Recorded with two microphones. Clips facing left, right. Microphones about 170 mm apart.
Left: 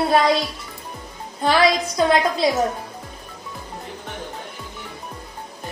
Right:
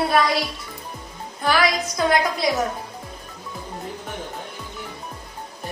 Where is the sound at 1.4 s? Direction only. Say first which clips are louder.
Left 3 dB; 25° left (ahead or behind).